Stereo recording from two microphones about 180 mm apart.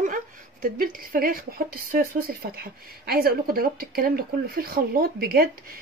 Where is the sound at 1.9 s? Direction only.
55° right (ahead or behind).